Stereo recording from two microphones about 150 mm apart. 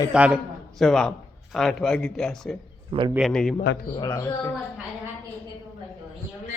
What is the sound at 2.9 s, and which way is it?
Speech, 35° right (ahead or behind).